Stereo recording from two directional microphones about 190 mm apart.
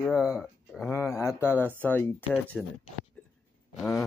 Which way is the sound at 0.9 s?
15° left (ahead or behind).